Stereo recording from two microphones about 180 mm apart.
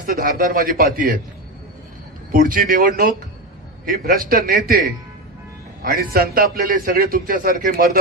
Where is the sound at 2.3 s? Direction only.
50° right (ahead or behind).